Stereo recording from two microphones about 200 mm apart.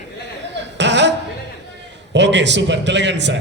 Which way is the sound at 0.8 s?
60° right (ahead or behind).